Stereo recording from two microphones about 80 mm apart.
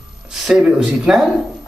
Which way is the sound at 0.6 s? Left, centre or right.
Centre.